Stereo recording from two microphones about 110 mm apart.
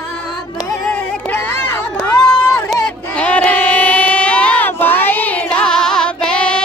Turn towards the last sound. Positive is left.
turn(degrees=10)  # may be behind; listen again after turning